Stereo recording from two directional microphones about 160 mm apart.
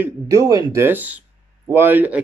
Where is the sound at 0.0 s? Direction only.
20° right (ahead or behind).